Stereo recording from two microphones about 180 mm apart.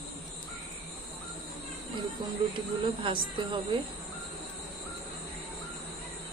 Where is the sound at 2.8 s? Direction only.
30° right (ahead or behind).